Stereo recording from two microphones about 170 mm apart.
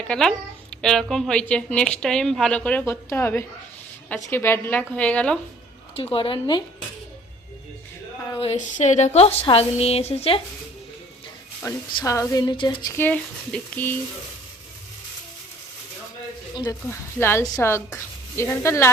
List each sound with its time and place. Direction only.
0.1 s a woman's voice: 5° left (ahead or behind)
6.0 s a woman's voice: 35° left (ahead or behind)
8.4 s a woman's voice: 40° left (ahead or behind)
11.9 s speech: 20° left (ahead or behind)
16.9 s a woman's voice: 15° left (ahead or behind)